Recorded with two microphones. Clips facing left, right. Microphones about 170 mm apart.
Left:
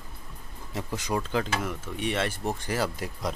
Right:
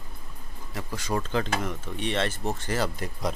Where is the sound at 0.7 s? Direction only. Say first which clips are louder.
Even; 20° left (ahead or behind).